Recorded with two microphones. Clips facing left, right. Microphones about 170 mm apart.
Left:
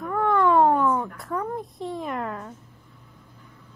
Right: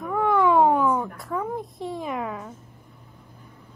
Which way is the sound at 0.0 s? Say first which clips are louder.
Right 1 dB; 5° right (ahead or behind).